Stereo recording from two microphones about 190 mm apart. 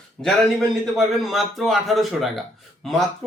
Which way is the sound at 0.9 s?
Centre (ahead or behind).